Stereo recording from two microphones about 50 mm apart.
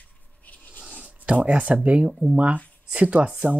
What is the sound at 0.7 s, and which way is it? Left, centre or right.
Writing, centre.